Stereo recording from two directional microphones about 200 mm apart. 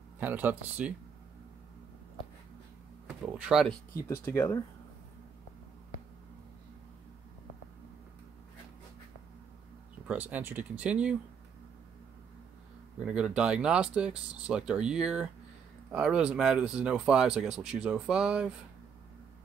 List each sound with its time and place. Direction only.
0.2 s speech: 10° right (ahead or behind)
3.1 s speech: 5° right (ahead or behind)
4.1 s speech: 10° left (ahead or behind)
10.0 s speech: 10° right (ahead or behind)
13.0 s speech: 5° right (ahead or behind)